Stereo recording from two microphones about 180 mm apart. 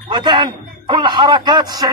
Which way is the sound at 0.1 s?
25° right (ahead or behind).